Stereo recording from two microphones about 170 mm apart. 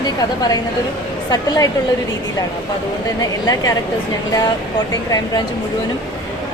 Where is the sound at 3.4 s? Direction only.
20° left (ahead or behind).